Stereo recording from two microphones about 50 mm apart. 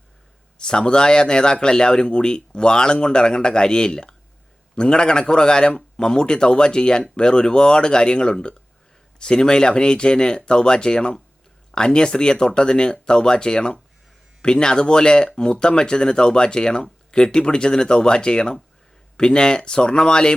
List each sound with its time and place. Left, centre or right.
0.6 s a man's voice: centre